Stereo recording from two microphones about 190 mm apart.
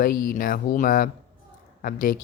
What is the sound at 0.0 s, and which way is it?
Speech, 45° left (ahead or behind).